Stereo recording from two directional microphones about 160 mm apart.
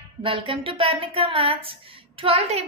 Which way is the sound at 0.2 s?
35° right (ahead or behind).